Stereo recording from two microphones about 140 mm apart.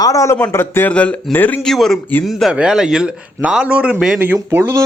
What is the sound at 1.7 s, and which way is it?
Speech, centre (ahead or behind).